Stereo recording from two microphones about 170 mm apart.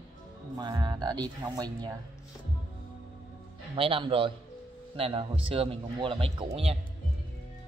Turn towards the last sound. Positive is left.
turn(degrees=-30)  # may be behind; listen again after turning